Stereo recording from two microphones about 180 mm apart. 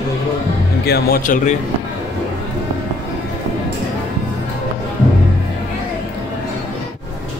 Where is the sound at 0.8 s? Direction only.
60° left (ahead or behind).